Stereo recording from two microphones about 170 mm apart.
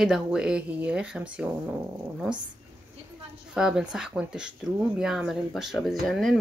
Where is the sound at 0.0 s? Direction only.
5° right (ahead or behind).